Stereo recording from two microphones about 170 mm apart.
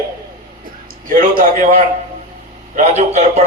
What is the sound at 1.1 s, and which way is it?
Speech, 55° right (ahead or behind).